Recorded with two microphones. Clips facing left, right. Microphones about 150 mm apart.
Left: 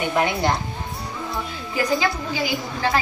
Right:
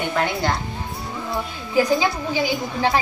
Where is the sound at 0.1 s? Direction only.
15° left (ahead or behind).